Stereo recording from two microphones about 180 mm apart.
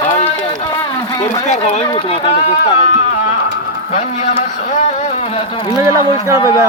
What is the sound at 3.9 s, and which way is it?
Speech, 40° left (ahead or behind).